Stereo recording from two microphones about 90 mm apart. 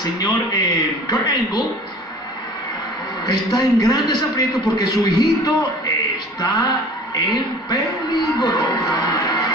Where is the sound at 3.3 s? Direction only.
50° left (ahead or behind).